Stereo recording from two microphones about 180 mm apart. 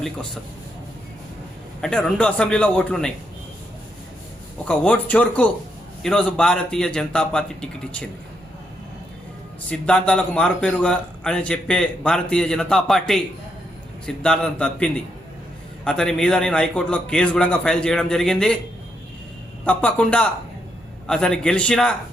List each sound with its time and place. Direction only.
1.8 s a man's voice: 5° left (ahead or behind)
4.6 s a man's voice: 5° left (ahead or behind)
9.6 s a man's voice: 5° left (ahead or behind)
19.6 s a man's voice: 5° left (ahead or behind)